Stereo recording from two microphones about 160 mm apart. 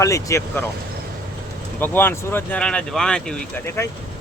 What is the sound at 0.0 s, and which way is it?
Speech, 20° left (ahead or behind).